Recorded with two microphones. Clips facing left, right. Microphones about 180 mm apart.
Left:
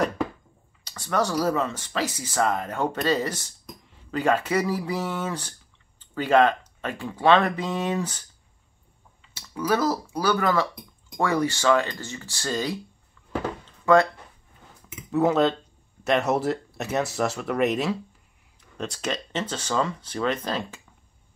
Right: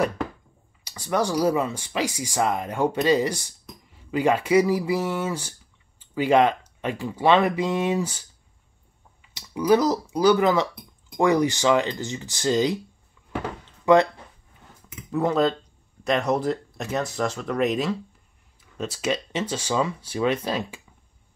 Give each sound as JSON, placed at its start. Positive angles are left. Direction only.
{"t": 0.8, "sound": "speech", "side_deg": -10}
{"t": 9.3, "sound": "speech", "side_deg": -15}
{"t": 13.9, "sound": "speech", "side_deg": -15}
{"t": 15.0, "sound": "speech", "side_deg": 5}